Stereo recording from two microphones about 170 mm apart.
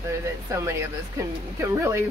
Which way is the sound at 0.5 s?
15° right (ahead or behind).